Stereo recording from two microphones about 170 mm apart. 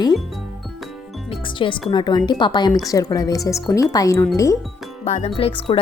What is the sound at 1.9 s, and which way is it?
A woman's voice, 25° left (ahead or behind).